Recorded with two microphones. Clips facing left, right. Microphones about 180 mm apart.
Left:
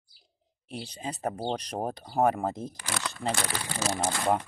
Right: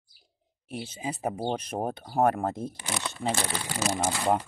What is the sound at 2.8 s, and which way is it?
Speech, 20° right (ahead or behind).